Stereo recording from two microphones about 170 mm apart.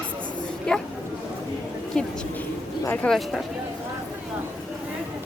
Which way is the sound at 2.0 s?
5° left (ahead or behind).